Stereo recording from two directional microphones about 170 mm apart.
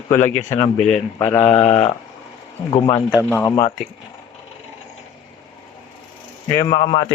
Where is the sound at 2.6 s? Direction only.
30° left (ahead or behind).